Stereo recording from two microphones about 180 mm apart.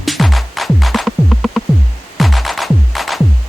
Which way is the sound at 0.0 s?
Centre (ahead or behind).